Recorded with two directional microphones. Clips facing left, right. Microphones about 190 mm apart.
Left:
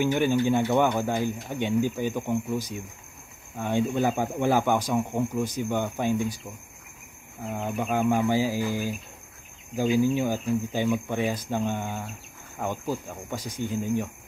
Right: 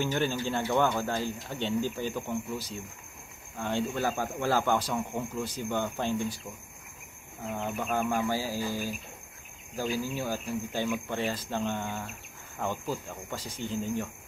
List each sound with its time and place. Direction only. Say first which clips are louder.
0.0 s speech: left 7 dB; 15° left (ahead or behind)
7.5 s speech: left 4 dB; 15° left (ahead or behind)